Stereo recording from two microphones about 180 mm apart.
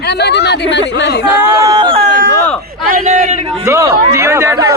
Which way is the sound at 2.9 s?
45° right (ahead or behind).